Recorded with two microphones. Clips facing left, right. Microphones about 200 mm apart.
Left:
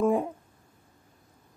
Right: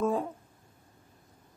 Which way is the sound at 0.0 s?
15° left (ahead or behind).